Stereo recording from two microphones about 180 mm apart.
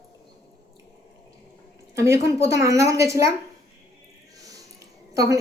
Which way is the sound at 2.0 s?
15° right (ahead or behind).